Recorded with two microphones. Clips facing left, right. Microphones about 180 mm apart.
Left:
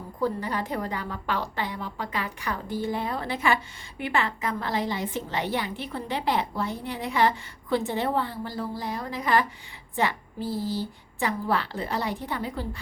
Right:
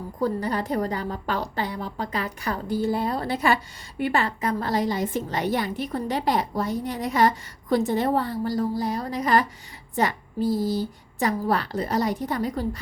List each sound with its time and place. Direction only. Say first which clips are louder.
0.2 s a woman's voice: right 3 dB; 40° right (ahead or behind)